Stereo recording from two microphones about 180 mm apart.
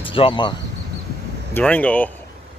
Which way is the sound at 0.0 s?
30° left (ahead or behind).